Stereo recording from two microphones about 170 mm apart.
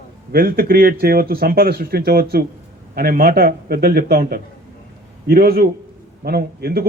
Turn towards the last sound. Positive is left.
turn(degrees=-65)  # may be behind; listen again after turning